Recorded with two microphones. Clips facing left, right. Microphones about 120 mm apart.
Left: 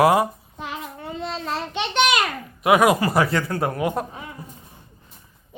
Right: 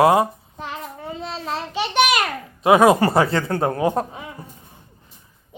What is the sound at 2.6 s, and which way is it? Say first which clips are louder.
Speech: right 3 dB; 30° right (ahead or behind).